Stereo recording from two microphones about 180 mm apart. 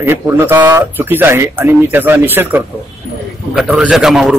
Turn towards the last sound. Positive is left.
turn(degrees=-5)  # may be behind; listen again after turning